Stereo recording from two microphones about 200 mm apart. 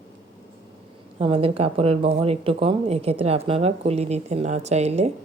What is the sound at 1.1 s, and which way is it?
Speech, 25° right (ahead or behind).